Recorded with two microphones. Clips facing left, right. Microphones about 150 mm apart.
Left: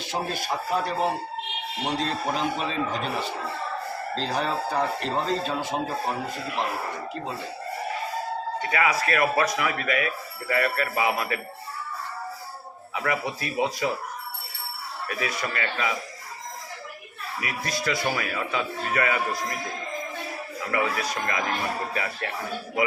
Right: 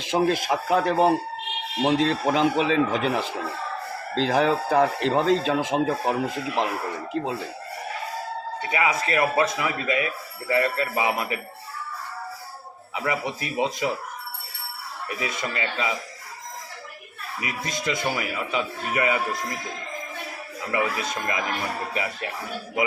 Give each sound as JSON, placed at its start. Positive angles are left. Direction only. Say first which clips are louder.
{"t": 0.1, "sound": "speech", "louder": "right 7 dB", "side_deg": -90}
{"t": 4.1, "sound": "speech", "louder": "right 7 dB", "side_deg": -90}
{"t": 8.7, "sound": "a man's voice", "louder": "right 1 dB", "side_deg": -20}
{"t": 13.0, "sound": "a man's voice", "louder": "right 1 dB", "side_deg": -20}
{"t": 15.0, "sound": "a man's voice", "louder": "even", "side_deg": -20}
{"t": 17.4, "sound": "a man's voice", "louder": "even", "side_deg": -20}
{"t": 20.7, "sound": "a man's voice", "louder": "right 1 dB", "side_deg": -20}